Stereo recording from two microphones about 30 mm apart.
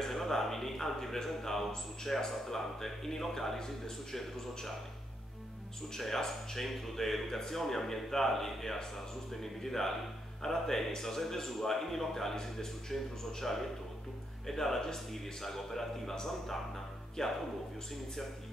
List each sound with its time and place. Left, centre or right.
0.0 s speech: centre
5.9 s speech: centre
14.8 s speech: left
15.4 s speech: centre